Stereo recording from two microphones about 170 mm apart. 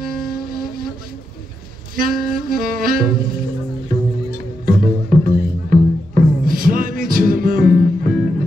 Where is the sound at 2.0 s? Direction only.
55° right (ahead or behind).